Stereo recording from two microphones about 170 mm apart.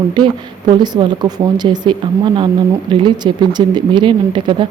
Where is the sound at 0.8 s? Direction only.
25° right (ahead or behind).